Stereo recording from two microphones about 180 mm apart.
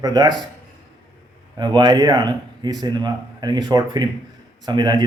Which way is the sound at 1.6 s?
25° right (ahead or behind).